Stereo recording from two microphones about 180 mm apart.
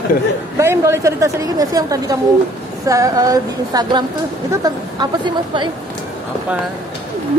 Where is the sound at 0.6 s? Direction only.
15° right (ahead or behind).